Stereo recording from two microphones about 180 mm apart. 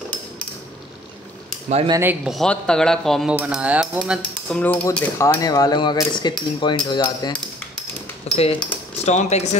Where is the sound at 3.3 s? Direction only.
5° right (ahead or behind).